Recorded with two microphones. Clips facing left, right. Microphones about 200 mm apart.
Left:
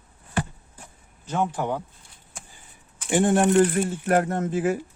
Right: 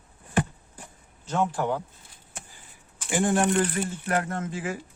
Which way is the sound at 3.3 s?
45° left (ahead or behind).